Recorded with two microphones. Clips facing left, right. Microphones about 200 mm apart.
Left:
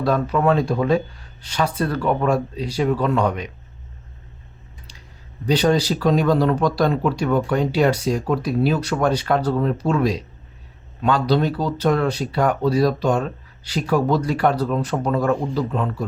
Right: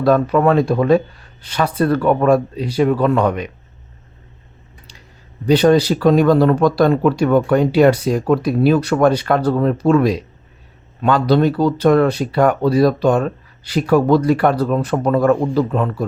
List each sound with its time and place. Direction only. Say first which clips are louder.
0.0 s speech: right 5 dB; 60° right (ahead or behind)
5.5 s speech: right 6 dB; 60° right (ahead or behind)